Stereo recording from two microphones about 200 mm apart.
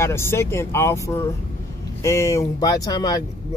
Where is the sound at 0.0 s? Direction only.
10° left (ahead or behind).